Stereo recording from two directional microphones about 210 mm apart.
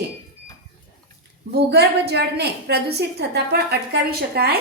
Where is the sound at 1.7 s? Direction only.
50° right (ahead or behind).